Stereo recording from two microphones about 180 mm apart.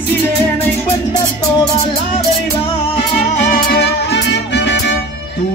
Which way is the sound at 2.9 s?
45° left (ahead or behind).